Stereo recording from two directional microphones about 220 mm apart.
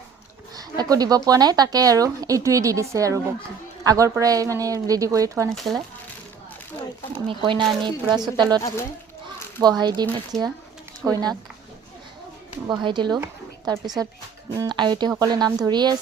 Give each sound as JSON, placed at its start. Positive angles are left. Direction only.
{"t": 0.5, "sound": "a woman's voice", "side_deg": -15}
{"t": 7.4, "sound": "a woman's voice", "side_deg": -20}
{"t": 12.6, "sound": "speech", "side_deg": -20}